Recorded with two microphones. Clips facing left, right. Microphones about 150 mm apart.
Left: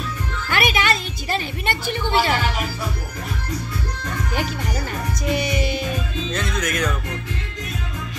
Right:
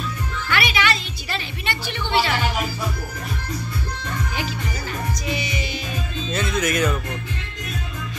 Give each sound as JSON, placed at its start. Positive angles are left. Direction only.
{"t": 0.5, "sound": "music", "side_deg": 45}
{"t": 1.3, "sound": "a sound", "side_deg": 45}
{"t": 5.2, "sound": "music", "side_deg": 55}
{"t": 6.3, "sound": "music", "side_deg": -5}